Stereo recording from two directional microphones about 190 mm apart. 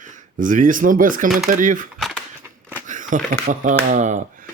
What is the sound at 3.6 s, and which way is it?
Speech, 40° right (ahead or behind).